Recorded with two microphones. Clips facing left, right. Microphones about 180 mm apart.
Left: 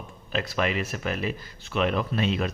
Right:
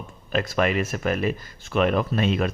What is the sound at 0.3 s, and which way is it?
Speech, 50° right (ahead or behind).